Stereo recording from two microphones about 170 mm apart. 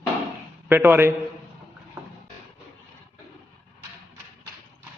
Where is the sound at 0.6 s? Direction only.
10° right (ahead or behind).